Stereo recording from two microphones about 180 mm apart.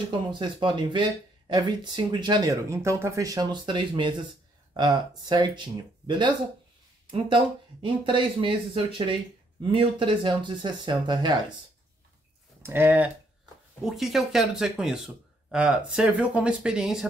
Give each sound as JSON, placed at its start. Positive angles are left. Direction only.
{"t": 0.3, "sound": "speech", "side_deg": -25}
{"t": 12.6, "sound": "speech", "side_deg": -10}